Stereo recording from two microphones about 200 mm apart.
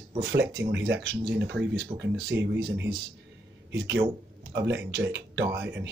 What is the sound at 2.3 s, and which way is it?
Speech, 60° right (ahead or behind).